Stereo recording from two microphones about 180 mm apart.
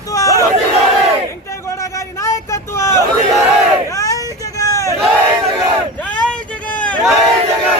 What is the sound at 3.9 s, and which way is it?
Vehicle, 20° left (ahead or behind).